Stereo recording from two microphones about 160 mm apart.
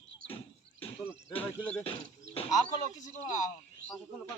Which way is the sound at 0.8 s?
35° left (ahead or behind).